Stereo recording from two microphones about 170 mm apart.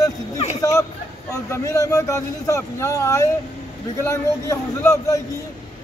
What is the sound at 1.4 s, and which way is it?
A man's voice, 20° left (ahead or behind).